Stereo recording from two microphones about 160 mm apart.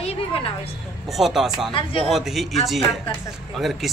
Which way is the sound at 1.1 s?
Centre (ahead or behind).